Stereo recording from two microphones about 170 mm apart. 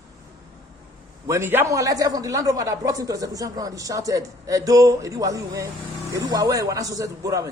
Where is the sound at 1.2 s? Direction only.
15° right (ahead or behind).